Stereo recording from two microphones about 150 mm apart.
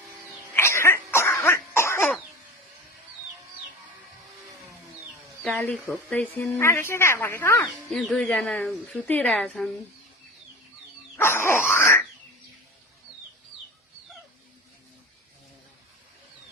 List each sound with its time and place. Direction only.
0.5 s cough: 15° left (ahead or behind)
5.4 s speech: 5° left (ahead or behind)
7.6 s speech: centre (ahead or behind)
11.2 s dog: 15° left (ahead or behind)